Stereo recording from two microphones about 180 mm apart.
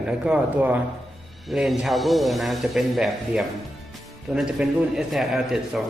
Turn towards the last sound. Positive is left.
turn(degrees=0)  # may be behind; listen again after turning